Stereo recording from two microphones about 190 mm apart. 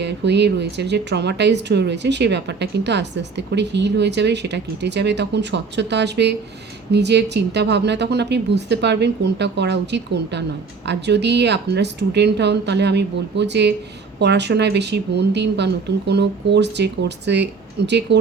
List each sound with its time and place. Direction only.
0.0 s speech: 65° right (ahead or behind)